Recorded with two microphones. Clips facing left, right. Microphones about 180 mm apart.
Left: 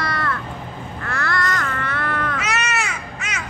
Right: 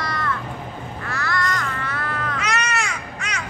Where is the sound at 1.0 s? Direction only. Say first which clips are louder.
Left 2 dB; 55° left (ahead or behind).